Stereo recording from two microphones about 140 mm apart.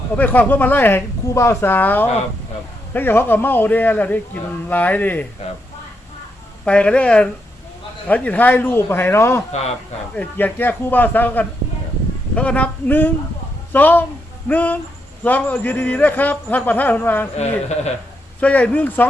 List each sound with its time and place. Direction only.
0.2 s a man's voice: 10° left (ahead or behind)
6.7 s a man's voice: 5° left (ahead or behind)
17.3 s speech: 50° left (ahead or behind)
18.3 s a man's voice: 10° left (ahead or behind)